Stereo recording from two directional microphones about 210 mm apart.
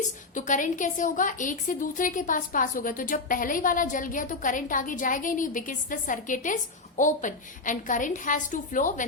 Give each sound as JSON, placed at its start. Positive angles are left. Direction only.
{"t": 0.3, "sound": "a woman's voice", "side_deg": 35}